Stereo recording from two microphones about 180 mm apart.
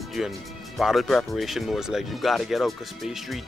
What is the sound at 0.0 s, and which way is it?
Speech, centre (ahead or behind).